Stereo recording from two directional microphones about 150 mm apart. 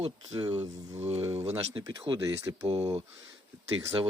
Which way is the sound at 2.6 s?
40° right (ahead or behind).